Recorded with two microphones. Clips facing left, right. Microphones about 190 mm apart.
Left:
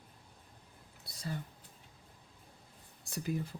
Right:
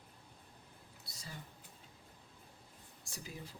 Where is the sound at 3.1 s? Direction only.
60° left (ahead or behind).